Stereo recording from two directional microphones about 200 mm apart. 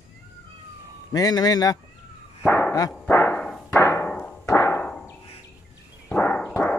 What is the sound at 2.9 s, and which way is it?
Music, 10° left (ahead or behind).